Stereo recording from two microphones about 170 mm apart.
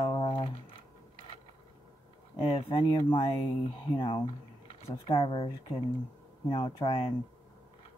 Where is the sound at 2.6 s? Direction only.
30° left (ahead or behind).